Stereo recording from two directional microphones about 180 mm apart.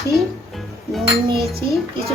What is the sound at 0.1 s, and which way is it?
Music, centre (ahead or behind).